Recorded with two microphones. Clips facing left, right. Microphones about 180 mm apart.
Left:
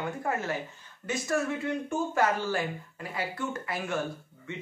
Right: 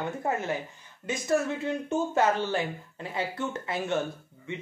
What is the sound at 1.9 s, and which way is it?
Speech, 20° right (ahead or behind).